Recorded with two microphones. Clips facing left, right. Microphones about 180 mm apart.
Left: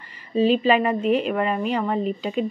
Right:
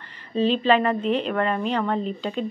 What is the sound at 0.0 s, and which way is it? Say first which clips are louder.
Speech: left 2 dB; 10° left (ahead or behind).